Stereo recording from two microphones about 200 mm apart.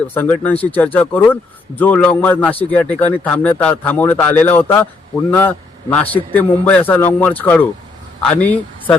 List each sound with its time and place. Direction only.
0.1 s a man's voice: 10° left (ahead or behind)